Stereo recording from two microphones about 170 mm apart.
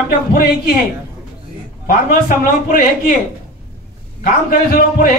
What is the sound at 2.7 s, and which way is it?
Speech, 60° left (ahead or behind).